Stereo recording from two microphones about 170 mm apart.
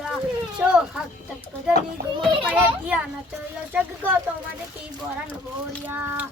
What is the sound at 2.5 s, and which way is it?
Speech, 10° right (ahead or behind).